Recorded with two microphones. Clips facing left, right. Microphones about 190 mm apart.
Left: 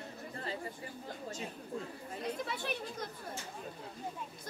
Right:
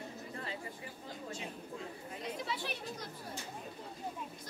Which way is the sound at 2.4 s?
50° left (ahead or behind).